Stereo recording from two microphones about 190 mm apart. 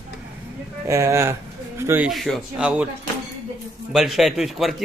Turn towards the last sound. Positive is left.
turn(degrees=0)  # may be behind; listen again after turning